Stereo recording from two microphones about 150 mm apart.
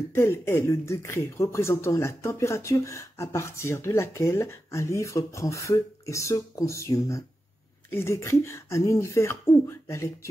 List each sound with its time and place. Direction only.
0.1 s speech: 15° left (ahead or behind)